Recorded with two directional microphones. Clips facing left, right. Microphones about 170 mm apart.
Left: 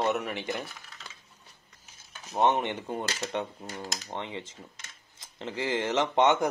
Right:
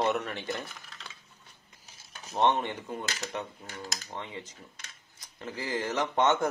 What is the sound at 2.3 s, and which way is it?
Speech, 15° left (ahead or behind).